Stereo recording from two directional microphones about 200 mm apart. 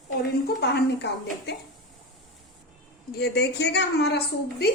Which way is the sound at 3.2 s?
60° left (ahead or behind).